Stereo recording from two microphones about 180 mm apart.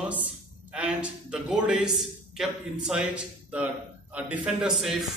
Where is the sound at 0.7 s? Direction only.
5° right (ahead or behind).